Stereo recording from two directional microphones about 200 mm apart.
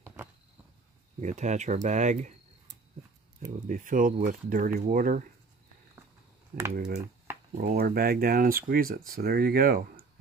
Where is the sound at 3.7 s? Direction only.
40° right (ahead or behind).